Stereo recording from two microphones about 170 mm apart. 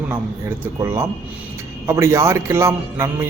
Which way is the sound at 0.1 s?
15° right (ahead or behind).